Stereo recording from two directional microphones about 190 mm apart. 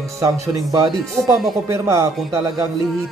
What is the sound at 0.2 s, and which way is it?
A man's voice, 15° right (ahead or behind).